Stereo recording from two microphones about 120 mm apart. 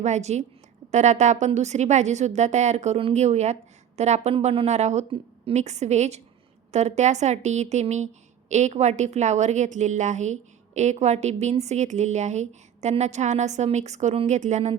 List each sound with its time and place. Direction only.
0.0 s a woman's voice: 70° right (ahead or behind)
1.5 s a woman's voice: 70° right (ahead or behind)
14.3 s speech: 85° right